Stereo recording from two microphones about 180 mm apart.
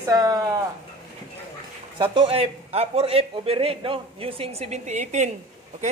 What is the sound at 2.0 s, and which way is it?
Speech, 30° right (ahead or behind).